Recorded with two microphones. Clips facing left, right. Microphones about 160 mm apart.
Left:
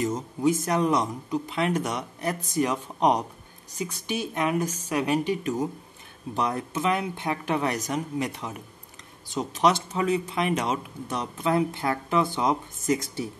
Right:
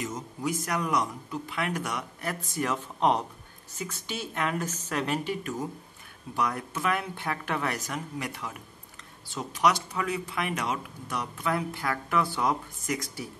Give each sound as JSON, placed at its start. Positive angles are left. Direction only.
{"t": 0.0, "sound": "speech", "side_deg": 25}